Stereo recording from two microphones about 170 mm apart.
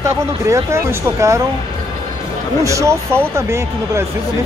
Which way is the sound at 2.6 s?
20° right (ahead or behind).